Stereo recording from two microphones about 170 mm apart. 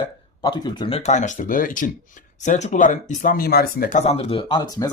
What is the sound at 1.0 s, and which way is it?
Speech, 45° left (ahead or behind).